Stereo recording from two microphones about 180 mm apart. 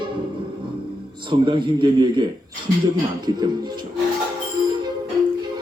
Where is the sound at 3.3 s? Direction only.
25° right (ahead or behind).